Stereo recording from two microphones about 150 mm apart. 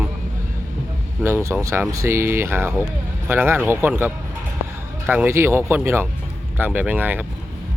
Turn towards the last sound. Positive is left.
turn(degrees=-10)  # may be behind; listen again after turning